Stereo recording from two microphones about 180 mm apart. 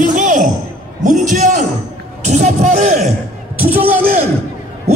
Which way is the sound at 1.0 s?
45° right (ahead or behind).